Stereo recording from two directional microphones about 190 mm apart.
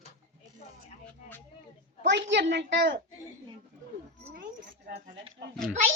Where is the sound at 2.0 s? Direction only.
70° right (ahead or behind).